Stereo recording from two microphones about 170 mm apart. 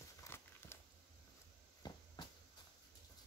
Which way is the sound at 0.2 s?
15° left (ahead or behind).